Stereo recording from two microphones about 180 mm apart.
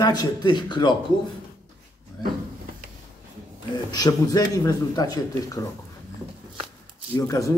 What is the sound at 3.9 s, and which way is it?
A man's voice, 20° left (ahead or behind).